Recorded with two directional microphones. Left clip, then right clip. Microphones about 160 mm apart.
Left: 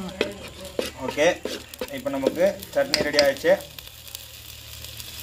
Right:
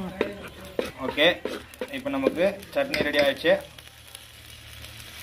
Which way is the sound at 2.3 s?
25° left (ahead or behind).